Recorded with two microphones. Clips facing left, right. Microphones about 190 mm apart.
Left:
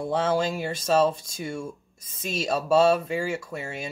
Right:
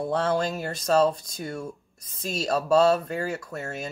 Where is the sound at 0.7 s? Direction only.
25° left (ahead or behind).